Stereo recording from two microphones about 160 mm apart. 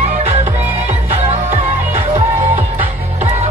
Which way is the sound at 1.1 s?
40° right (ahead or behind).